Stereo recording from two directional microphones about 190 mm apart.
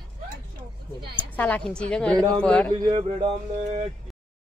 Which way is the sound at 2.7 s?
25° right (ahead or behind).